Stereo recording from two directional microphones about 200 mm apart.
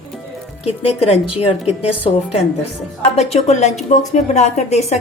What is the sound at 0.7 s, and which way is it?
A woman's voice, 30° left (ahead or behind).